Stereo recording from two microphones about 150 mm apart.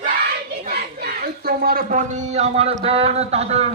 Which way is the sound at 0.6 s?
90° right.